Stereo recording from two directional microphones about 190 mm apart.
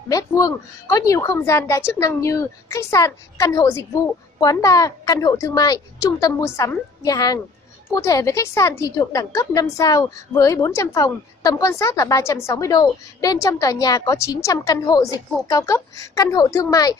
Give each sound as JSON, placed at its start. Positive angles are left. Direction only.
{"t": 0.1, "sound": "speech", "side_deg": 15}